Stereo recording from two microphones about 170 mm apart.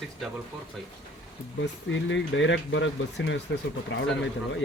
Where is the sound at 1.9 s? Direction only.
90° left.